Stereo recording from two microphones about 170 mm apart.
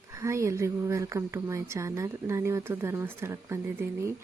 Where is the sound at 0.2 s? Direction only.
15° right (ahead or behind).